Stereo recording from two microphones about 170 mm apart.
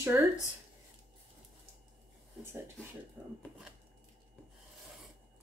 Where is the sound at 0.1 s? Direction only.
10° right (ahead or behind).